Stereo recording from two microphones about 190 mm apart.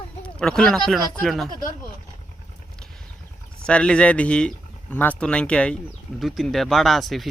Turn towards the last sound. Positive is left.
turn(degrees=0)  # may be behind; listen again after turning